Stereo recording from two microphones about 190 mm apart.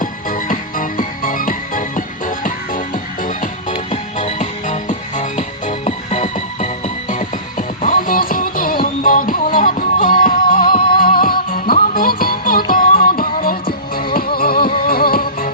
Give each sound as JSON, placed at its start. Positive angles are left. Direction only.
{"t": 0.0, "sound": "music", "side_deg": 45}